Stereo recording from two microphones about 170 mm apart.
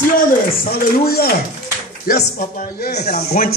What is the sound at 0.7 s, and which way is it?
A man's voice, 65° left (ahead or behind).